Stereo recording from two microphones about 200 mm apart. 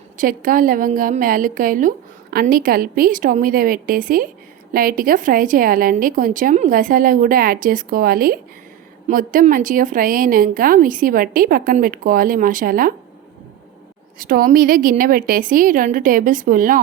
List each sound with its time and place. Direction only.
0.2 s speech: 45° right (ahead or behind)
14.2 s speech: 45° right (ahead or behind)